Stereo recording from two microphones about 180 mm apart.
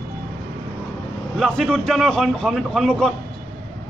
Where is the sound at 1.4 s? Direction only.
Centre (ahead or behind).